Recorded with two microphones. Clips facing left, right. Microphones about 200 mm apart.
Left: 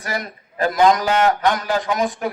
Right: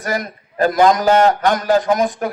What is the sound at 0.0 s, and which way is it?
A man's voice, 45° right (ahead or behind).